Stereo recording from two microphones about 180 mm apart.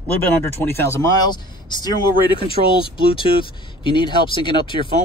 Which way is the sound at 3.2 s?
30° left (ahead or behind).